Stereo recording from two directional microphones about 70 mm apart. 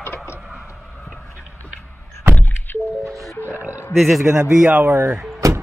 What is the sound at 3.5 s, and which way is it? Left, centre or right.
Oink, right.